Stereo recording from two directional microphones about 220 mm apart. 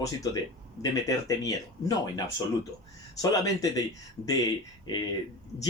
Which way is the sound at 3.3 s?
15° left (ahead or behind).